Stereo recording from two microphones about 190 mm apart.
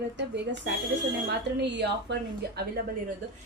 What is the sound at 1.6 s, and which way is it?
Speech, 65° right (ahead or behind).